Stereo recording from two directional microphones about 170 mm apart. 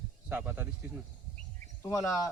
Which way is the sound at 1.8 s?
15° left (ahead or behind).